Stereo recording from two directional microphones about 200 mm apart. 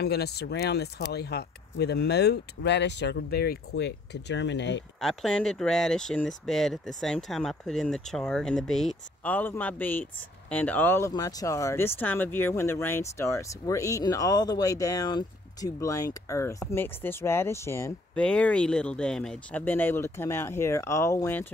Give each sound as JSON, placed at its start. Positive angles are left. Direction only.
{"t": 0.0, "sound": "speech", "side_deg": 55}
{"t": 5.0, "sound": "speech", "side_deg": 5}